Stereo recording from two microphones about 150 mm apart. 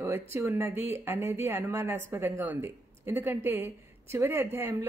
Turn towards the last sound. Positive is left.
turn(degrees=-15)  # may be behind; listen again after turning